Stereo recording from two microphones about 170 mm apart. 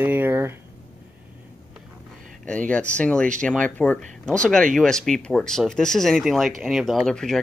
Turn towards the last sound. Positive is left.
turn(degrees=5)  # may be behind; listen again after turning